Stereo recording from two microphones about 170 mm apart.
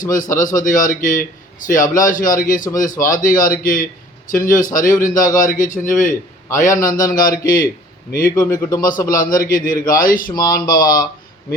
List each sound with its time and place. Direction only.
0.3 s a man's voice: 50° left (ahead or behind)
6.7 s a man's voice: 20° left (ahead or behind)
7.1 s a man's voice: 55° left (ahead or behind)
8.4 s a man's voice: 15° left (ahead or behind)
8.8 s a man's voice: 55° left (ahead or behind)